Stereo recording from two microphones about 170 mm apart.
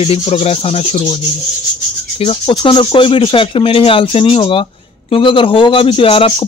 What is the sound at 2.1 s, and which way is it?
Speech, 35° left (ahead or behind).